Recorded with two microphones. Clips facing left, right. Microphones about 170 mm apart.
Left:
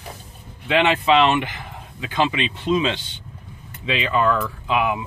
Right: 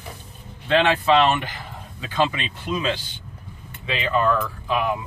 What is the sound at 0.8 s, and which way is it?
Speech, 20° left (ahead or behind).